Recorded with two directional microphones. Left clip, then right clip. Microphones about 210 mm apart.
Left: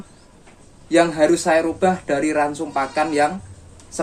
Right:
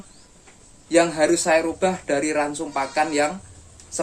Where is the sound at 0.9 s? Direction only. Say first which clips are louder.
Left 2 dB; 20° right (ahead or behind).